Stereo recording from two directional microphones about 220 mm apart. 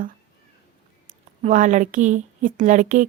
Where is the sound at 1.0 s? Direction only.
35° right (ahead or behind).